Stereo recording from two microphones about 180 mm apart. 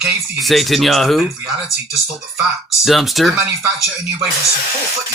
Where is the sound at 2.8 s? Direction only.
Centre (ahead or behind).